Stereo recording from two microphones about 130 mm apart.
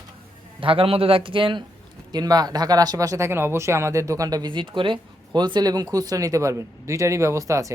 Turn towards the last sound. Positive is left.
turn(degrees=-25)  # may be behind; listen again after turning